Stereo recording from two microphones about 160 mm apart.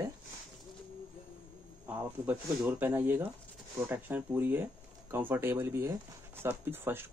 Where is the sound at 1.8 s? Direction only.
10° right (ahead or behind).